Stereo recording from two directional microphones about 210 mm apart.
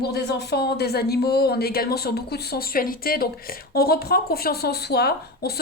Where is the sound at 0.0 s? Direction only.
50° left (ahead or behind).